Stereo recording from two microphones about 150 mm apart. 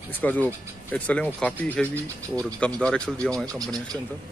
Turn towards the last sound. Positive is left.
turn(degrees=-25)  # may be behind; listen again after turning